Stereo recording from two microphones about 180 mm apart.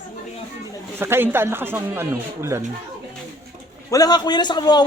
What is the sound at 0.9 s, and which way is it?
Speech, 15° right (ahead or behind).